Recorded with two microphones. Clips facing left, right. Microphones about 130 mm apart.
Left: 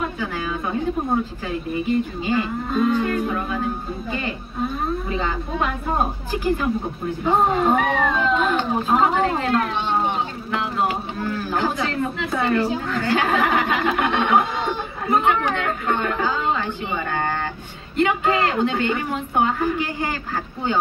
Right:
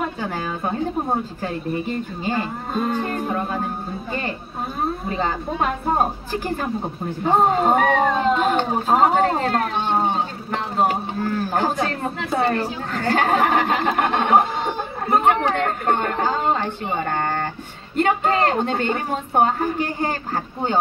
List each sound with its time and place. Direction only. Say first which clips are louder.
0.0 s speech: even; 40° right (ahead or behind)
5.1 s speech: right 1 dB; 40° right (ahead or behind)
7.2 s speech: right 1 dB; 40° right (ahead or behind)